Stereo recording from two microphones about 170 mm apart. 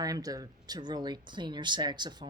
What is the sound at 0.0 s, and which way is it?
Speech, 20° right (ahead or behind).